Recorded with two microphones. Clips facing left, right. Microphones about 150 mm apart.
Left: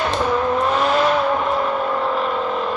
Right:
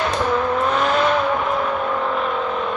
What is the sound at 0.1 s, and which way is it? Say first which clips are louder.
Vehicle: left 1 dB; 5° left (ahead or behind).